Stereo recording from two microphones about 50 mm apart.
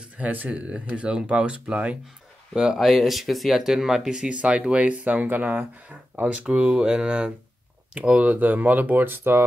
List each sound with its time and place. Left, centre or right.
0.2 s speech: right
2.5 s speech: centre
2.8 s speech: centre; by 6.2 s right
6.2 s speech: right